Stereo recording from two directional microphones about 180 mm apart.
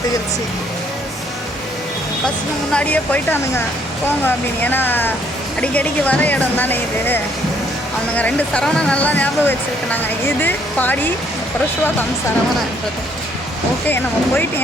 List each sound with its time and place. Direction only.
2.7 s speech: 10° left (ahead or behind)
13.8 s speech: 10° left (ahead or behind)